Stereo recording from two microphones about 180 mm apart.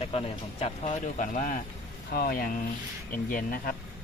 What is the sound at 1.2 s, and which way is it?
Speech, 45° left (ahead or behind).